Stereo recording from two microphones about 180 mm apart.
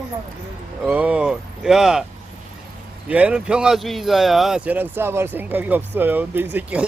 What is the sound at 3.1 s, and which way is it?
Speech, 5° right (ahead or behind).